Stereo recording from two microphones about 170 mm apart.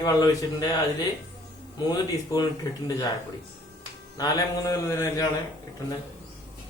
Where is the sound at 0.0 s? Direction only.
20° left (ahead or behind).